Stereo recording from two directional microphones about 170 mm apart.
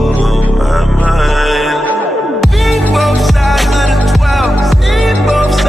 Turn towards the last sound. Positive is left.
turn(degrees=0)  # may be behind; listen again after turning